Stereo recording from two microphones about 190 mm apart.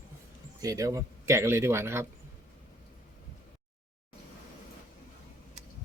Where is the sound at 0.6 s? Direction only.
15° right (ahead or behind).